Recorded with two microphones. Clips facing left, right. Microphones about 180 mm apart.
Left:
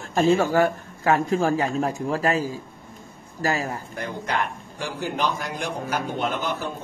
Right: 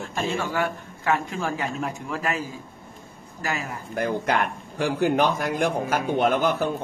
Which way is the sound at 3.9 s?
55° right (ahead or behind).